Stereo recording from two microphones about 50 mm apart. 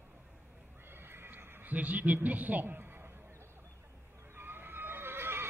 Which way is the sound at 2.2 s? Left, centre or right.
Right.